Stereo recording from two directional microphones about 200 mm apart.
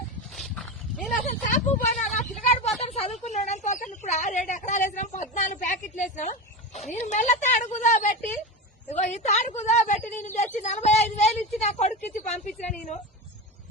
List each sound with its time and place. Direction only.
0.3 s dog: centre (ahead or behind)
1.3 s vehicle: 35° left (ahead or behind)
1.9 s a sound: 35° left (ahead or behind)
2.6 s a woman's voice: 30° left (ahead or behind)